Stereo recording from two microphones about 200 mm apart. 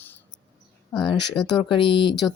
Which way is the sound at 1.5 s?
25° left (ahead or behind).